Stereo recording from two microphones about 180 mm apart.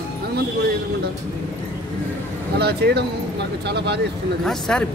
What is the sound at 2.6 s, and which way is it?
Speech, 65° right (ahead or behind).